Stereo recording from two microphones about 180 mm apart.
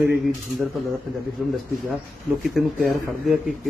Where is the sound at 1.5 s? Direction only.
Centre (ahead or behind).